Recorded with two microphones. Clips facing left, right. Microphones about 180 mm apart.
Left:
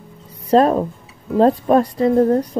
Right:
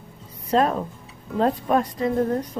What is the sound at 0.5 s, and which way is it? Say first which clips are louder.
A woman's voice: left 7 dB; 40° left (ahead or behind).